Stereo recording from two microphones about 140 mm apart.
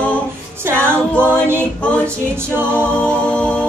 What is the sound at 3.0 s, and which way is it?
A capella, 10° left (ahead or behind).